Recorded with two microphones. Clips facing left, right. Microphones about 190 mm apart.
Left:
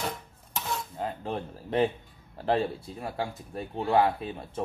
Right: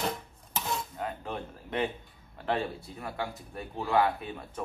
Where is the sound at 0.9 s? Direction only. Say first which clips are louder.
Left 3 dB; 30° left (ahead or behind).